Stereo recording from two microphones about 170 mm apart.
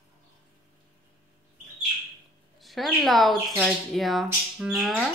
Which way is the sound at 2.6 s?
Centre (ahead or behind).